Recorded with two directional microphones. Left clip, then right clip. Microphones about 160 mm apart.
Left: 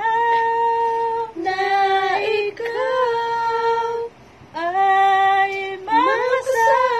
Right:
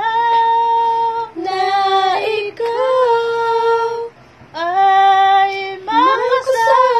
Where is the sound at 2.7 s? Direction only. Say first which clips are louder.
Right 6 dB; 20° right (ahead or behind).